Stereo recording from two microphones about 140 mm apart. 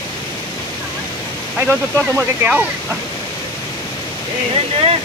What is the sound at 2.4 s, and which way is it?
Speech, 10° right (ahead or behind).